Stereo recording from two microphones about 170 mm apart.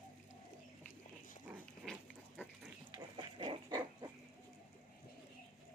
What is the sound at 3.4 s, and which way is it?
Dog, 25° right (ahead or behind).